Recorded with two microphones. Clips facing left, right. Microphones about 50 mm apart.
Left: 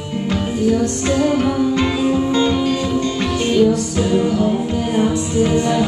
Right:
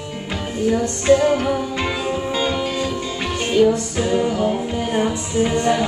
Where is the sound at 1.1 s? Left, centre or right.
Centre.